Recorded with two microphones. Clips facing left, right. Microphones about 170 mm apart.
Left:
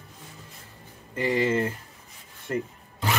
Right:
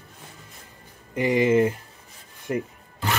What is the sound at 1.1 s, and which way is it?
Speech, 15° right (ahead or behind).